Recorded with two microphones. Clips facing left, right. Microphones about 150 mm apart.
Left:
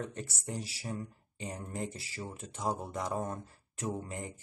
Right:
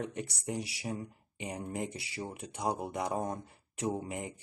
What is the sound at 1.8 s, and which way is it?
Speech, 85° right.